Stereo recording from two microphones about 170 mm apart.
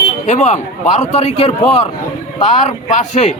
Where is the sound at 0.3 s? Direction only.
45° left (ahead or behind).